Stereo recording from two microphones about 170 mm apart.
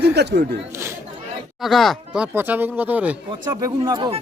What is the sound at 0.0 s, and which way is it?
Speech, 75° right (ahead or behind).